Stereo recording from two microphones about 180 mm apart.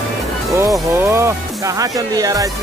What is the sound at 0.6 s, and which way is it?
Music, 15° right (ahead or behind).